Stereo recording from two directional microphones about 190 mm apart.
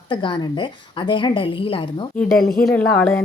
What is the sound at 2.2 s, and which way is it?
Speech, 5° left (ahead or behind).